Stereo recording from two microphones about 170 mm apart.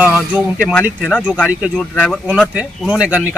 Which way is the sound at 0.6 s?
5° left (ahead or behind).